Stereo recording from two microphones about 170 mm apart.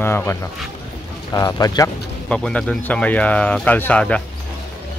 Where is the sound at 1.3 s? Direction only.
20° left (ahead or behind).